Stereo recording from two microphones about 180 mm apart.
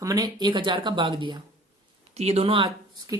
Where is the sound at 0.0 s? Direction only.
20° right (ahead or behind).